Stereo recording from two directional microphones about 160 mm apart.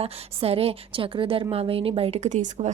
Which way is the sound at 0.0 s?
40° right (ahead or behind).